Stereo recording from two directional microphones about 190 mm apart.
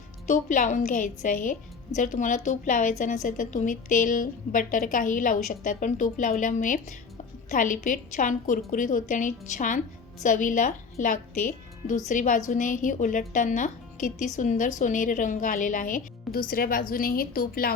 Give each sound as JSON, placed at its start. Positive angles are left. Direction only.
{"t": 0.3, "sound": "a woman's voice", "side_deg": 45}